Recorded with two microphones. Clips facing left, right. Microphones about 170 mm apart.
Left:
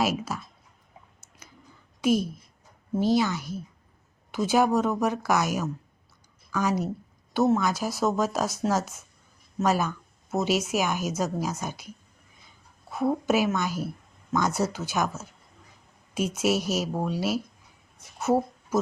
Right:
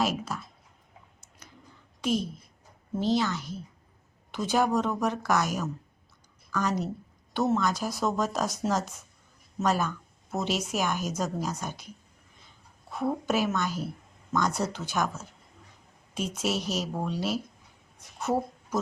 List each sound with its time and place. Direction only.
0.0 s speech: 5° left (ahead or behind)
2.0 s a woman's voice: 10° left (ahead or behind)
12.9 s a woman's voice: 5° left (ahead or behind)
18.2 s a sound: 5° left (ahead or behind)